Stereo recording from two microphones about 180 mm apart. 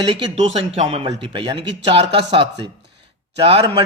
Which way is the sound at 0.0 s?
25° right (ahead or behind).